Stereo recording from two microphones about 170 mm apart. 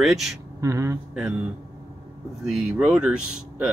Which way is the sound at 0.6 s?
15° right (ahead or behind).